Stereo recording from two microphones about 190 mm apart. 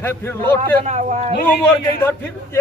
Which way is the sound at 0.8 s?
35° right (ahead or behind).